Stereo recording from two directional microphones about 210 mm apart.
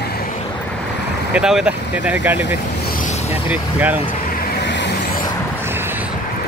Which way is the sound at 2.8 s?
40° left (ahead or behind).